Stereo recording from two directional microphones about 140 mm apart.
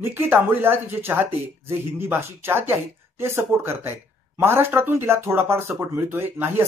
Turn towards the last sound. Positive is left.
turn(degrees=-15)  # may be behind; listen again after turning